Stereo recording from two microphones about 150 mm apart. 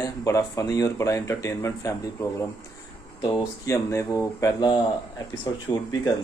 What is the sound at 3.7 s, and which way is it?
Speech, 20° left (ahead or behind).